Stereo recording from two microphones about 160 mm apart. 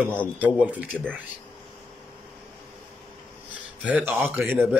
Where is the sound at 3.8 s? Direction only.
10° right (ahead or behind).